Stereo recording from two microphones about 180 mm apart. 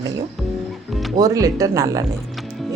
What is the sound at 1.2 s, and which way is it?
Speech, 20° right (ahead or behind).